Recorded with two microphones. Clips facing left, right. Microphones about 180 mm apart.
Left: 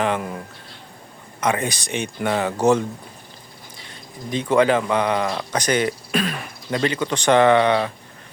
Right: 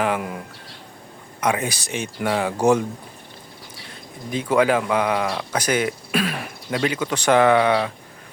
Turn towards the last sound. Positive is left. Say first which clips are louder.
# left 1 dB
turn(degrees=-5)  # may be behind; listen again after turning